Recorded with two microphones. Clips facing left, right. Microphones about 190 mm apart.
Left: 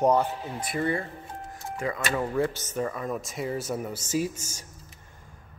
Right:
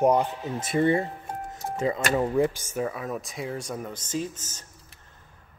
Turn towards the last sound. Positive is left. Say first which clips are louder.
# left 3 dB
turn(degrees=10)  # may be behind; listen again after turning